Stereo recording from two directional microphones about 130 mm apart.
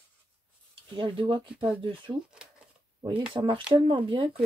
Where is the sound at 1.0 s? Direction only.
40° right (ahead or behind).